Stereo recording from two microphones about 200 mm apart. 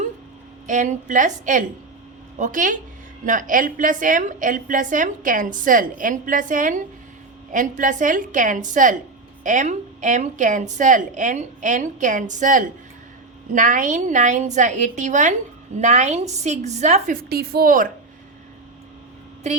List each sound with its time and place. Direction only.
0.7 s a woman's voice: 40° right (ahead or behind)
17.2 s a woman's voice: 50° right (ahead or behind)